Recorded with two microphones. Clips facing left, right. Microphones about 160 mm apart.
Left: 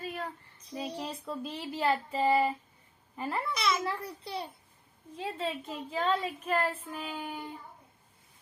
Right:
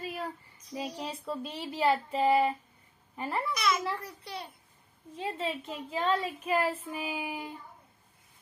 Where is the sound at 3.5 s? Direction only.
30° left (ahead or behind).